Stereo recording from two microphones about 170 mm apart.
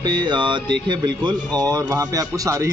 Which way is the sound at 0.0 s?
25° right (ahead or behind).